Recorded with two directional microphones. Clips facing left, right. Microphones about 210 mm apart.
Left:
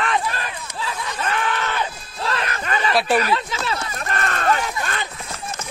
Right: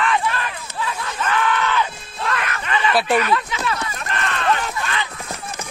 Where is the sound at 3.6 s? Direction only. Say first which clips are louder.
Right 2 dB; 30° left (ahead or behind).